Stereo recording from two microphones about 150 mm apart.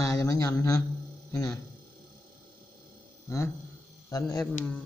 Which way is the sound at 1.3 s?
20° left (ahead or behind).